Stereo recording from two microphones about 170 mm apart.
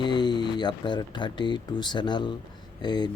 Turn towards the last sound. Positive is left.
turn(degrees=25)  # may be behind; listen again after turning